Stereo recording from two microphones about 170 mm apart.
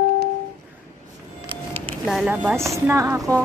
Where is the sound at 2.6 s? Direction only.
15° right (ahead or behind).